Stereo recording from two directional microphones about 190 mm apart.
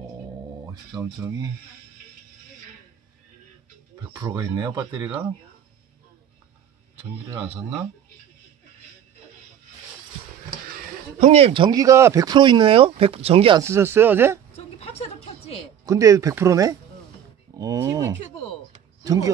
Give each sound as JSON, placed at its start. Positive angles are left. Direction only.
{"t": 0.7, "sound": "speech", "side_deg": -20}
{"t": 4.1, "sound": "a man's voice", "side_deg": -20}
{"t": 7.0, "sound": "speech", "side_deg": -15}
{"t": 10.7, "sound": "a man's voice", "side_deg": -35}
{"t": 13.6, "sound": "speech", "side_deg": -15}
{"t": 14.5, "sound": "a sound", "side_deg": 30}
{"t": 15.8, "sound": "speech", "side_deg": -15}